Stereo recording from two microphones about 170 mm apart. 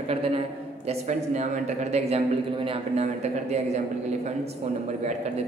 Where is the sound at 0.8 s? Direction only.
40° right (ahead or behind).